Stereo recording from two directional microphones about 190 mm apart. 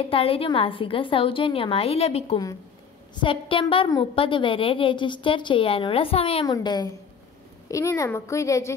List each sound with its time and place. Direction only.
0.0 s a woman's voice: 30° left (ahead or behind)